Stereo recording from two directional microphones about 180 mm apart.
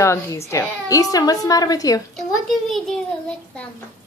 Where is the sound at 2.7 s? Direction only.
Centre (ahead or behind).